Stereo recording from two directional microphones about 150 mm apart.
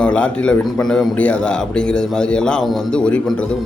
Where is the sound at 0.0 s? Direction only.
5° left (ahead or behind).